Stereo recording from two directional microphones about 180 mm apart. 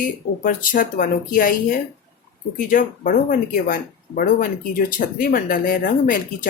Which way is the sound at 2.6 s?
50° left (ahead or behind).